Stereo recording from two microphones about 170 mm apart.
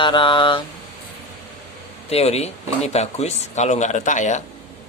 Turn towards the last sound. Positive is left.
turn(degrees=45)  # may be behind; listen again after turning